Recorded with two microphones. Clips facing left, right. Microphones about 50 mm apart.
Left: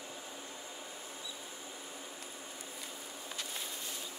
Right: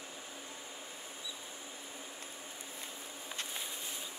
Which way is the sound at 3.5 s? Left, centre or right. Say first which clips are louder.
Even; centre.